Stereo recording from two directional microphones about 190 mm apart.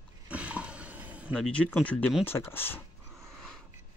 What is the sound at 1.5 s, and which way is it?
Speech, 5° left (ahead or behind).